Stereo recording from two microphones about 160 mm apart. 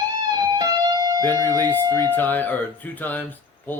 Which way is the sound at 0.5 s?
25° right (ahead or behind).